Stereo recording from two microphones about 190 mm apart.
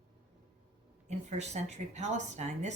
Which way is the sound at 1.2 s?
35° right (ahead or behind).